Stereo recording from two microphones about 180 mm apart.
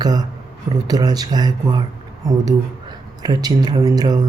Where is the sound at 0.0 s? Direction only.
20° right (ahead or behind).